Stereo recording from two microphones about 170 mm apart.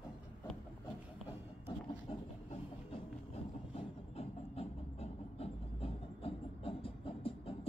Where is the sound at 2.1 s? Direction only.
35° left (ahead or behind).